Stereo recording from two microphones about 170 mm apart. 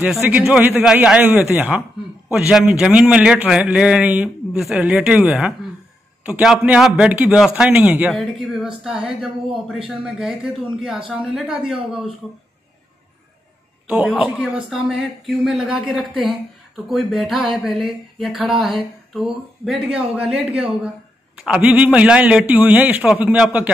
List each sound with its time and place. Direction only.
0.0 s a man's voice: 5° right (ahead or behind)
13.8 s a man's voice: 10° right (ahead or behind)